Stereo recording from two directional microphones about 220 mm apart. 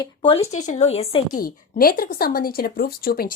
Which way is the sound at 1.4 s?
40° left (ahead or behind).